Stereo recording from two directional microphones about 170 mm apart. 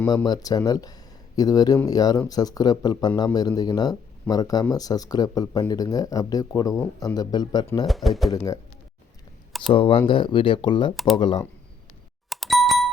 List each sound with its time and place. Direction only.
0.3 s speech: 20° left (ahead or behind)
7.9 s speech: centre (ahead or behind)
9.5 s a sound: centre (ahead or behind)
9.7 s speech: 30° left (ahead or behind)
10.9 s speech: centre (ahead or behind)
11.2 s speech: 30° left (ahead or behind)
12.3 s a sound: centre (ahead or behind)